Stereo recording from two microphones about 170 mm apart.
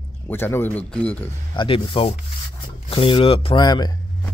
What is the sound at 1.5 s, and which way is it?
Speech, 30° left (ahead or behind).